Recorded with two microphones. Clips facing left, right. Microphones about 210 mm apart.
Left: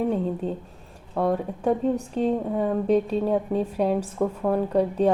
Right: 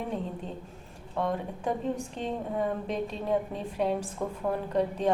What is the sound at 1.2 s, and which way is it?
Speech, 35° left (ahead or behind).